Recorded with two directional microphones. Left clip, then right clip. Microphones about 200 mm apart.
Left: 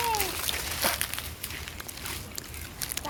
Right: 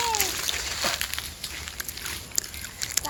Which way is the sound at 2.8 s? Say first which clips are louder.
Right 4 dB; 10° right (ahead or behind).